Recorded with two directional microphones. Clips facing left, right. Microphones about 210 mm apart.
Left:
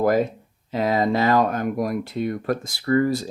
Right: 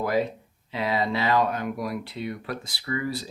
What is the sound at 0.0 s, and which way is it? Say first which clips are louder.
Speech: left 5 dB; 45° left (ahead or behind).